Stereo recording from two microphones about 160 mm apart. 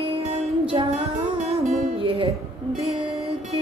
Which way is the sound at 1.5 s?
35° right (ahead or behind).